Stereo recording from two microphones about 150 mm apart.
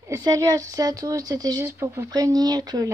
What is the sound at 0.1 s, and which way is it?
Speech, 25° right (ahead or behind).